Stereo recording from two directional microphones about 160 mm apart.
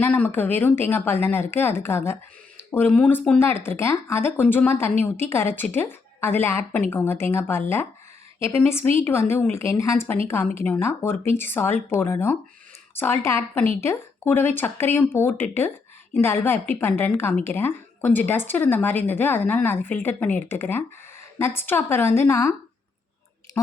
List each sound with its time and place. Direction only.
0.0 s speech: 10° left (ahead or behind)